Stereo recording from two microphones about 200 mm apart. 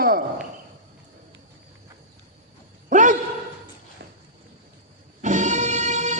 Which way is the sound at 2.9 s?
40° right (ahead or behind).